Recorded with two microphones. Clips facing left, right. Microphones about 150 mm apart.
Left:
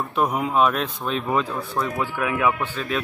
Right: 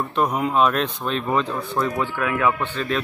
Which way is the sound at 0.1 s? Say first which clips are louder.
Even; 5° left (ahead or behind).